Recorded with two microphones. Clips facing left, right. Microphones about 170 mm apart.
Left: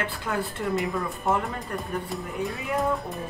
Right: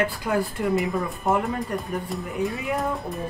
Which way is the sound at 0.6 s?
Centre (ahead or behind).